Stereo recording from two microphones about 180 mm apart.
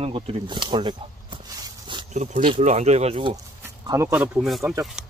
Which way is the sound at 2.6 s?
40° right (ahead or behind).